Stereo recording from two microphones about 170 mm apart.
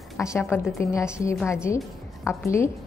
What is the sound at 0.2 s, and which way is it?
A woman's voice, 15° left (ahead or behind).